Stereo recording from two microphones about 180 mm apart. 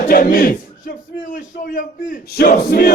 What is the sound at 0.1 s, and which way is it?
A man's voice, 50° left (ahead or behind).